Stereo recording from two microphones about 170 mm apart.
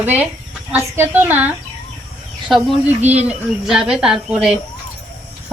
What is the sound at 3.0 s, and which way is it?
Speech, 40° right (ahead or behind).